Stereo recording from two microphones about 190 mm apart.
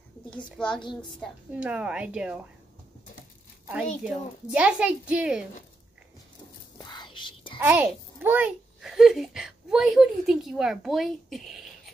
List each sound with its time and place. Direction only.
0.6 s a woman's voice: 5° left (ahead or behind)
4.0 s a woman's voice: 5° right (ahead or behind)
6.8 s whispering: 25° left (ahead or behind)
7.6 s a child's voice: 10° right (ahead or behind)